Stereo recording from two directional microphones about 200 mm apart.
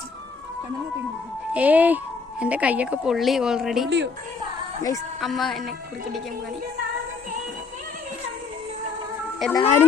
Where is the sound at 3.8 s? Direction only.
60° right (ahead or behind).